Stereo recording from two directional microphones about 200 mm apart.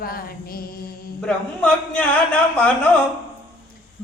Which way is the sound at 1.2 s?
5° left (ahead or behind).